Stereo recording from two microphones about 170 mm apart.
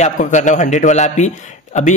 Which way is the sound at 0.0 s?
45° left (ahead or behind).